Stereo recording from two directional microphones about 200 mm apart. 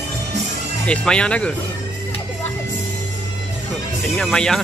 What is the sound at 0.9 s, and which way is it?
Speech, 5° left (ahead or behind).